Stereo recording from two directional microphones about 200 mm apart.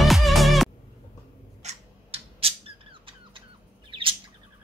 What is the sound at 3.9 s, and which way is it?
Bird, 25° right (ahead or behind).